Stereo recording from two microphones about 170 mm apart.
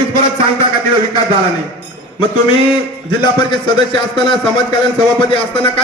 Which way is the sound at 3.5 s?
25° left (ahead or behind).